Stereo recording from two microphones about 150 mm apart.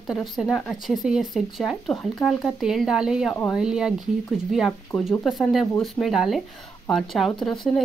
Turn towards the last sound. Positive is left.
turn(degrees=5)  # may be behind; listen again after turning